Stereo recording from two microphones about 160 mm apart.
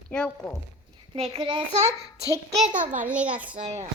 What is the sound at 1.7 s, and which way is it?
Speech, 45° right (ahead or behind).